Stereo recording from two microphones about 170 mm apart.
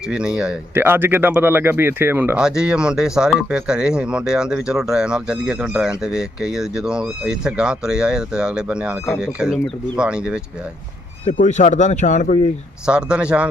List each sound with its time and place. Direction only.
0.1 s speech: 5° right (ahead or behind)
11.3 s speech: 45° left (ahead or behind)
12.8 s speech: 5° right (ahead or behind)